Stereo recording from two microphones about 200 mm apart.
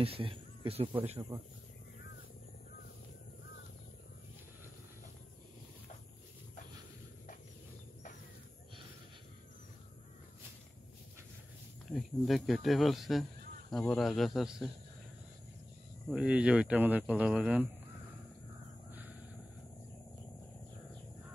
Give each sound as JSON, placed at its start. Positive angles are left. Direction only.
{"t": 0.0, "sound": "speech", "side_deg": -25}
{"t": 11.9, "sound": "speech", "side_deg": 0}
{"t": 16.1, "sound": "speech", "side_deg": -5}
{"t": 18.9, "sound": "a sound", "side_deg": -10}